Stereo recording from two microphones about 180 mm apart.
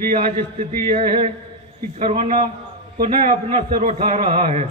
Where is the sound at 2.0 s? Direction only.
35° right (ahead or behind).